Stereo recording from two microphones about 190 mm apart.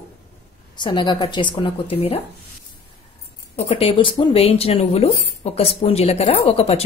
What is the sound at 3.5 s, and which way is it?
Speech, 30° left (ahead or behind).